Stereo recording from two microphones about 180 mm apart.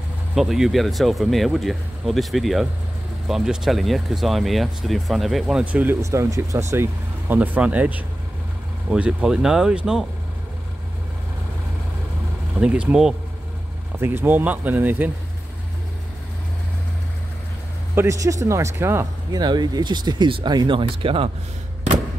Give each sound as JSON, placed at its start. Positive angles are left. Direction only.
{"t": 0.3, "sound": "speech", "side_deg": 0}
{"t": 12.5, "sound": "speech", "side_deg": -5}
{"t": 17.9, "sound": "speech", "side_deg": -15}